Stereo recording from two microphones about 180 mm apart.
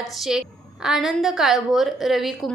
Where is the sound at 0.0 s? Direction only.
Centre (ahead or behind).